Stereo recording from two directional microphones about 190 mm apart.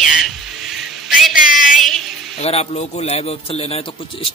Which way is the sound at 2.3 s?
35° left (ahead or behind).